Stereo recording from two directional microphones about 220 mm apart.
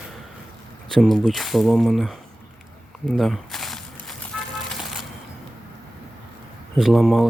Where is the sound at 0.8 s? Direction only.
Centre (ahead or behind).